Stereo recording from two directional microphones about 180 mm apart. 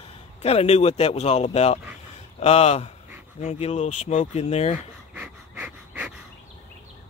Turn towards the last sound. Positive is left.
turn(degrees=-10)  # may be behind; listen again after turning